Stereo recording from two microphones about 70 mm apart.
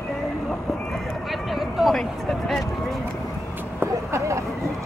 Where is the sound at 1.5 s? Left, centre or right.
Centre.